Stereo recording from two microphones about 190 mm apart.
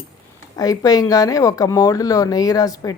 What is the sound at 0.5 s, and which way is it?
A woman's voice, 20° left (ahead or behind).